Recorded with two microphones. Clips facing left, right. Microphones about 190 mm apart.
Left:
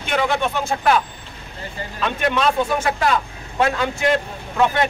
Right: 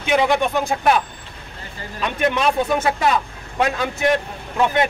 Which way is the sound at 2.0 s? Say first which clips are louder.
Even; 20° right (ahead or behind).